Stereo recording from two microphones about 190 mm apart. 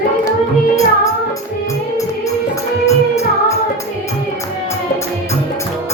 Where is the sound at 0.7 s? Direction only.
15° left (ahead or behind).